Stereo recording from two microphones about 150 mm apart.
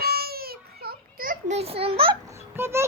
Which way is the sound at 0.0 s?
90° right.